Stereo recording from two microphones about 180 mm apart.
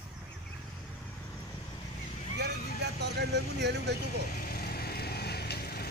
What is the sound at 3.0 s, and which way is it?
Speech, 70° right (ahead or behind).